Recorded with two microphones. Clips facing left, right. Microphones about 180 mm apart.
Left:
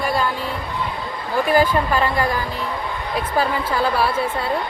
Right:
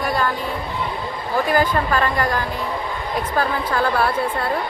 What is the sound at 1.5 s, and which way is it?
Speech, 10° left (ahead or behind).